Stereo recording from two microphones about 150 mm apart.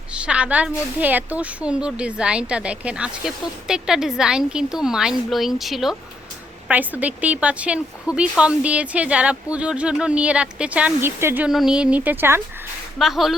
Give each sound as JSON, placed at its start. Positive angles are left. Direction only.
{"t": 0.1, "sound": "a woman's voice", "side_deg": -10}
{"t": 13.0, "sound": "a woman's voice", "side_deg": 0}